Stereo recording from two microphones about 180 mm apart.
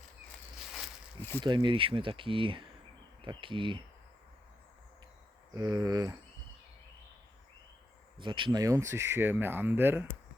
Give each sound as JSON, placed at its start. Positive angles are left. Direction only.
{"t": 0.3, "sound": "a sound", "side_deg": 0}
{"t": 1.2, "sound": "speech", "side_deg": 10}
{"t": 1.5, "sound": "speech", "side_deg": -25}
{"t": 5.5, "sound": "speech", "side_deg": -20}
{"t": 8.2, "sound": "speech", "side_deg": -25}